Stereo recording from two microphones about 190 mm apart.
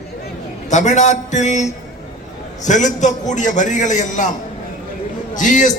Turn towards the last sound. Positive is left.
turn(degrees=40)  # may be behind; listen again after turning